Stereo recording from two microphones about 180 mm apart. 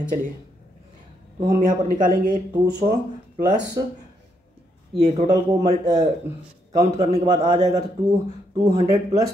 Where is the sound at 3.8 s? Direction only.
20° right (ahead or behind).